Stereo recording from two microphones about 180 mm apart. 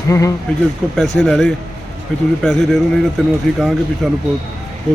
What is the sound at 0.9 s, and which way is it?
A man's voice, 5° left (ahead or behind).